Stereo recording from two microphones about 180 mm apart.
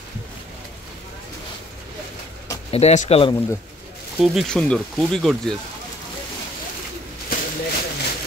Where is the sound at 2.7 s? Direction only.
40° left (ahead or behind).